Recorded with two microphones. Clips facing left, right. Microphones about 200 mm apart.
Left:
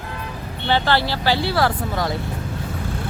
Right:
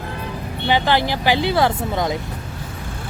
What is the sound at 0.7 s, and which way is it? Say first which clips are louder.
Speech: right 1 dB; 15° right (ahead or behind).